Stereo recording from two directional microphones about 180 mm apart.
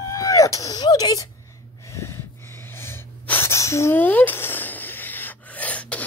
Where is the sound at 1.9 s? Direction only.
15° left (ahead or behind).